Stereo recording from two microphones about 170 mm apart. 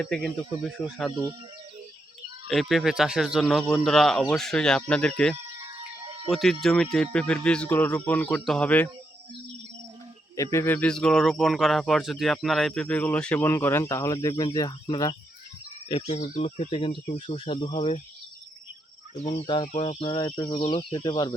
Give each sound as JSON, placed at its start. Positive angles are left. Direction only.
{"t": 0.0, "sound": "speech", "side_deg": 5}
{"t": 1.1, "sound": "speech", "side_deg": -25}
{"t": 2.5, "sound": "speech", "side_deg": 0}
{"t": 10.3, "sound": "speech", "side_deg": 20}
{"t": 15.9, "sound": "speech", "side_deg": 35}
{"t": 19.1, "sound": "speech", "side_deg": 40}